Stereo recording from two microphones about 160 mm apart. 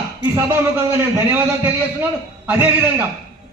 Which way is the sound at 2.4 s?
15° right (ahead or behind).